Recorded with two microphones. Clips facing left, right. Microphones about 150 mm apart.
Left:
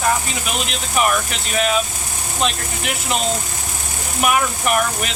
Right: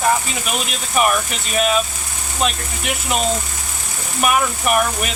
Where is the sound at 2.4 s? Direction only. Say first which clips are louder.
Even; 5° right (ahead or behind).